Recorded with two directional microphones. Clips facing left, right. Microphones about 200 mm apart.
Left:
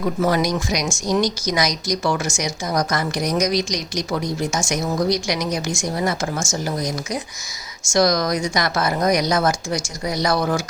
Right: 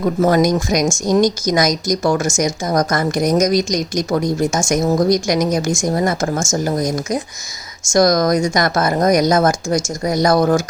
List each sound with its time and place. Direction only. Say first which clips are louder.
0.0 s speech: right 5 dB; 45° right (ahead or behind)